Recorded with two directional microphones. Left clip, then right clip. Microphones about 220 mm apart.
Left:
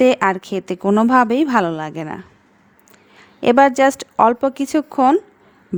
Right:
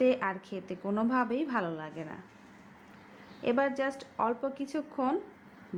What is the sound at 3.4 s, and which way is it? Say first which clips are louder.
A woman's voice: left 17 dB; 55° left (ahead or behind).